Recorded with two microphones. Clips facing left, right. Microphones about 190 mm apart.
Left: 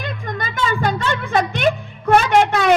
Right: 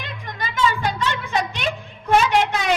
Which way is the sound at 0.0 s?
50° left (ahead or behind).